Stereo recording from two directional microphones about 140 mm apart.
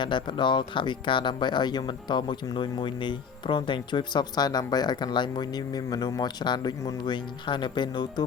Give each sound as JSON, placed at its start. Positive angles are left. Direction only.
{"t": 0.0, "sound": "speech", "side_deg": 35}